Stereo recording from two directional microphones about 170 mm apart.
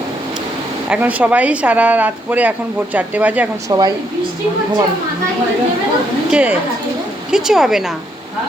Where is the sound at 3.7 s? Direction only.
25° right (ahead or behind).